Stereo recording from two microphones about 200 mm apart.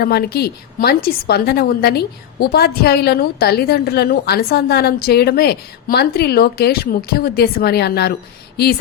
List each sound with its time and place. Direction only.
0.0 s a woman's voice: 50° left (ahead or behind)